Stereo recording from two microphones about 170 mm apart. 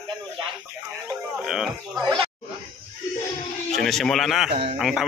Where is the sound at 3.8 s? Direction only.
Centre (ahead or behind).